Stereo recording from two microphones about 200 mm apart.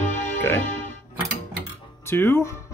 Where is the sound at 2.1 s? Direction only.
10° left (ahead or behind).